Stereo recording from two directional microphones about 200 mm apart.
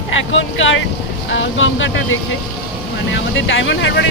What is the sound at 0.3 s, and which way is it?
Speech, 70° left (ahead or behind).